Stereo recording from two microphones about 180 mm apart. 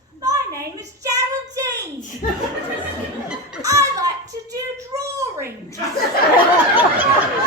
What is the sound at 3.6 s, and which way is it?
Music, 20° right (ahead or behind).